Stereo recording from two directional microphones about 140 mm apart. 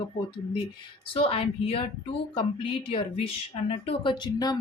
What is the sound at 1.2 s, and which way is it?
Speech, 40° left (ahead or behind).